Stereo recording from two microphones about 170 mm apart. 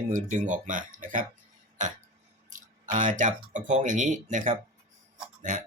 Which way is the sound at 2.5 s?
50° right (ahead or behind).